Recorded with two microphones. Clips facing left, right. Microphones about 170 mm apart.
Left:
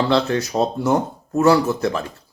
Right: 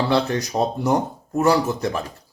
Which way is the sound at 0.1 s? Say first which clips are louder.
Left 2 dB; 20° right (ahead or behind).